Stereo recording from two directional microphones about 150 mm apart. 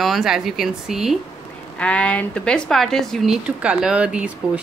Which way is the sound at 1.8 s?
10° left (ahead or behind).